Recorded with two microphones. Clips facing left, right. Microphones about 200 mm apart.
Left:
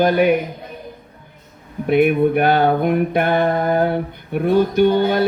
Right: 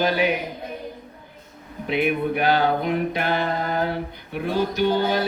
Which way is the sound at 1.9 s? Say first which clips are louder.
Left 8 dB; 50° left (ahead or behind).